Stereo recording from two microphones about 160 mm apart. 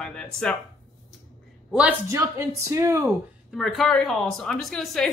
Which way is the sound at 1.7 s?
5° right (ahead or behind).